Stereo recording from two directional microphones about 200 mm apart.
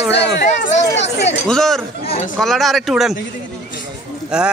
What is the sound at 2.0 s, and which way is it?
Speech, 30° left (ahead or behind).